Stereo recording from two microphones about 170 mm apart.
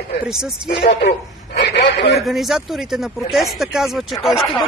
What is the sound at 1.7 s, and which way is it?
Speech, 90° left.